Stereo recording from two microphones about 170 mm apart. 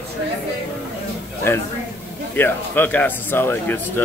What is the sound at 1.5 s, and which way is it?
Speech, 15° left (ahead or behind).